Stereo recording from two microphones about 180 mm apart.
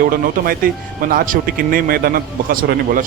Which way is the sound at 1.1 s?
50° right (ahead or behind).